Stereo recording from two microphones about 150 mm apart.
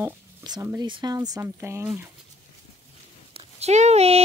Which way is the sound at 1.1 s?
20° right (ahead or behind).